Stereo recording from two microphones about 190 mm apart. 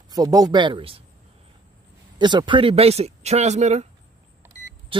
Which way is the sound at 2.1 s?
25° right (ahead or behind).